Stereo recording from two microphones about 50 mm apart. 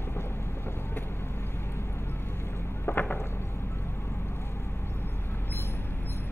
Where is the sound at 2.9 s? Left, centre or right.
Left.